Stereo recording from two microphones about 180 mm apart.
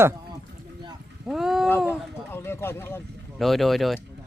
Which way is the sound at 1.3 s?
Centre (ahead or behind).